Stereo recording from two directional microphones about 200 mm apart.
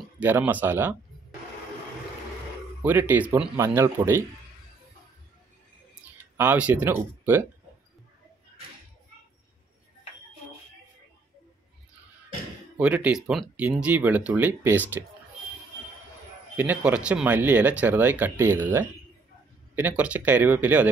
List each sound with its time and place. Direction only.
0.0 s speech: 10° right (ahead or behind)
2.8 s speech: 10° right (ahead or behind)
6.0 s speech: 10° right (ahead or behind)
12.7 s speech: 5° right (ahead or behind)
16.5 s speech: 5° right (ahead or behind)